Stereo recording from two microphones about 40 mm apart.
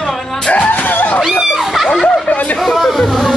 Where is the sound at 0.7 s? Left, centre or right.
Left.